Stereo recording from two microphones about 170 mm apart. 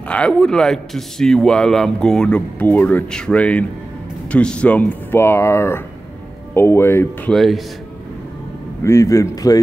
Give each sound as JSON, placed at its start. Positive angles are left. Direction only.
{"t": 0.1, "sound": "a man's voice", "side_deg": 5}
{"t": 7.3, "sound": "a man's voice", "side_deg": 0}
{"t": 8.8, "sound": "a man's voice", "side_deg": 15}